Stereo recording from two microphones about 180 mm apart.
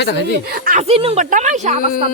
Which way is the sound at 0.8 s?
35° right (ahead or behind).